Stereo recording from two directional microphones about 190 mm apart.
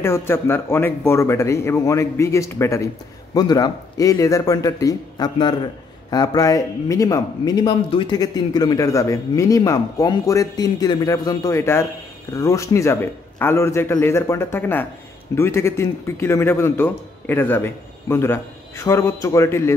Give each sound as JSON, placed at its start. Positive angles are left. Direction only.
{"t": 0.0, "sound": "a man's voice", "side_deg": 10}